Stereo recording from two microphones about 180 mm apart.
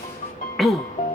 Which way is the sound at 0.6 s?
Centre (ahead or behind).